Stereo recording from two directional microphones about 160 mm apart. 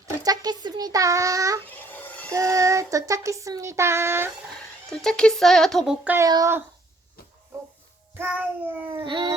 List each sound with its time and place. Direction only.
0.2 s speech: 25° right (ahead or behind)
1.6 s a sound: 10° left (ahead or behind)
2.3 s speech: 20° right (ahead or behind)
4.9 s speech: 5° left (ahead or behind)
6.1 s cat: 20° right (ahead or behind)
8.1 s cat: 10° right (ahead or behind)
9.0 s a sound: 30° right (ahead or behind)